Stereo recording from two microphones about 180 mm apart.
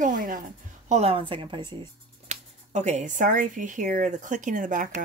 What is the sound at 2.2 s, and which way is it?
Speech, 40° right (ahead or behind).